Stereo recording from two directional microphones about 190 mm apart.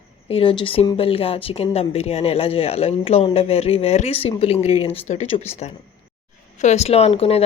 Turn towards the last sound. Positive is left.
turn(degrees=30)  # may be behind; listen again after turning